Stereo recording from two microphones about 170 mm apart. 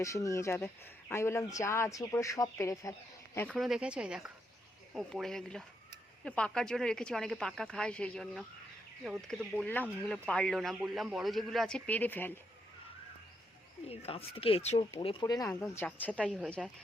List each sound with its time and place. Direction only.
0.0 s speech: 20° left (ahead or behind)
3.3 s speech: 5° left (ahead or behind)
13.8 s speech: 35° left (ahead or behind); by 16.6 s centre (ahead or behind)